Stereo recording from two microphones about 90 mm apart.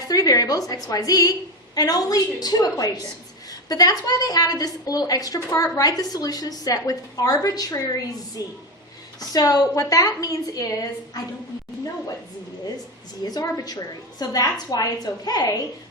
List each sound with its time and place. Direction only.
0.1 s a woman's voice: 40° left (ahead or behind)
13.4 s a woman's voice: 45° left (ahead or behind)